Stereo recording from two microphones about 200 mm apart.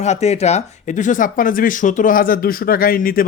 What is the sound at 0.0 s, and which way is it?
Speech, 35° left (ahead or behind).